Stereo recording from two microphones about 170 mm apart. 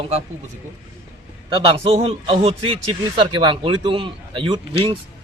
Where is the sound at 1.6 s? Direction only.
35° right (ahead or behind).